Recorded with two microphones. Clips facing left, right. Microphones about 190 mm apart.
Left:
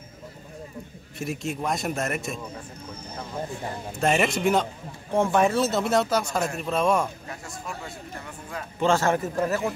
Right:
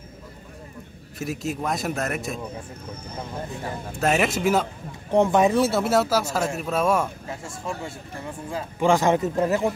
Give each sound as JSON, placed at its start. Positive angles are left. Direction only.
{"t": 1.1, "sound": "speech", "side_deg": 0}
{"t": 4.0, "sound": "speech", "side_deg": 0}
{"t": 5.1, "sound": "speech", "side_deg": -20}
{"t": 7.2, "sound": "speech", "side_deg": -25}
{"t": 8.7, "sound": "a man's voice", "side_deg": -15}